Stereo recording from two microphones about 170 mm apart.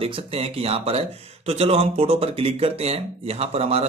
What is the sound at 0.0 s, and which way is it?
Speech, 35° right (ahead or behind).